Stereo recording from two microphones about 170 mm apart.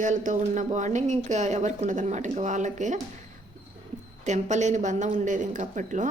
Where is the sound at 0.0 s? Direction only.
45° right (ahead or behind).